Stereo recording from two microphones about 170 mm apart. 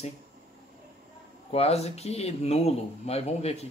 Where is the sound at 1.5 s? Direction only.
35° left (ahead or behind).